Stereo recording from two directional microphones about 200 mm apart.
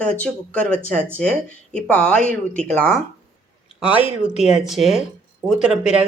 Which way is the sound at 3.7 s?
5° right (ahead or behind).